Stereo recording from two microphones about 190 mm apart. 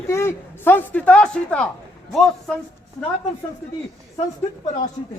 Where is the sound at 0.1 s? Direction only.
15° left (ahead or behind).